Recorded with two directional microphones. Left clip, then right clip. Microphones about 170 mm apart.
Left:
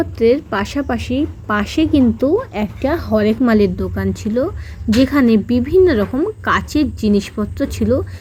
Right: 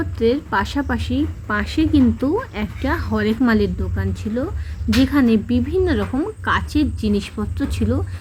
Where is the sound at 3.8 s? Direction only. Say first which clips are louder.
Left 6 dB; 30° left (ahead or behind).